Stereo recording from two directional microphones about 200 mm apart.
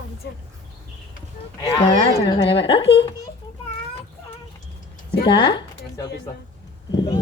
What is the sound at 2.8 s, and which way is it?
Speech, 60° left (ahead or behind).